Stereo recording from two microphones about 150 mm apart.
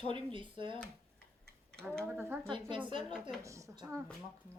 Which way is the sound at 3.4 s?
20° right (ahead or behind).